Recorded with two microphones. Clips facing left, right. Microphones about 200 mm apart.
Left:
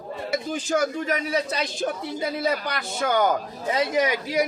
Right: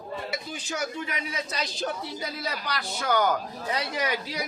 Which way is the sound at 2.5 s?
50° left (ahead or behind).